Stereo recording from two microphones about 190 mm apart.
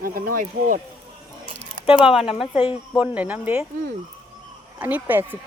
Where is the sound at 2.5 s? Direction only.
30° left (ahead or behind).